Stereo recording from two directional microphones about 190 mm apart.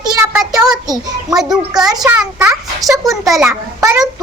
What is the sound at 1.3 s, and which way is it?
A child's voice, centre (ahead or behind).